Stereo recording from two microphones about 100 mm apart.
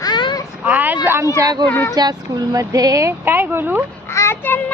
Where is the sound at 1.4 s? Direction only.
40° right (ahead or behind).